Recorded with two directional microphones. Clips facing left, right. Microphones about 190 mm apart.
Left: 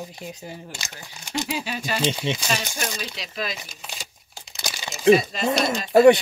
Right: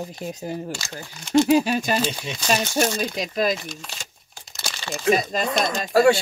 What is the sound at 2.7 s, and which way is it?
Speech, 50° right (ahead or behind).